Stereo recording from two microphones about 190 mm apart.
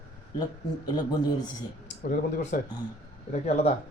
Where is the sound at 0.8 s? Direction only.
20° left (ahead or behind).